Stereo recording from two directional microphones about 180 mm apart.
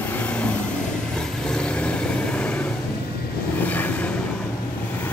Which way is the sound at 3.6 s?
10° left (ahead or behind).